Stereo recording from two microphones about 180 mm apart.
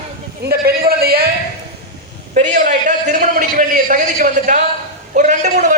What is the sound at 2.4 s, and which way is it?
A man's voice, 45° right (ahead or behind).